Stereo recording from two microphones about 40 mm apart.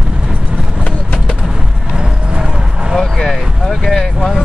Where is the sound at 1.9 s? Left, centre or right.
Right.